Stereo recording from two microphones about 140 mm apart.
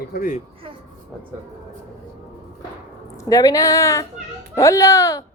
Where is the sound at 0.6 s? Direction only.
40° right (ahead or behind).